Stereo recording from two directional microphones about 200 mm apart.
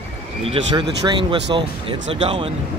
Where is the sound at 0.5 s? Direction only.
25° right (ahead or behind).